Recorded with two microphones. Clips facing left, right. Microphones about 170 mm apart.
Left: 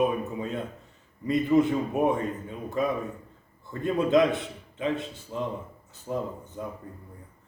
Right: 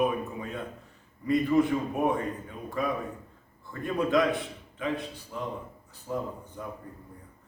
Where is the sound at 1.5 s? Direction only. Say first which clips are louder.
Left 3 dB; 20° left (ahead or behind).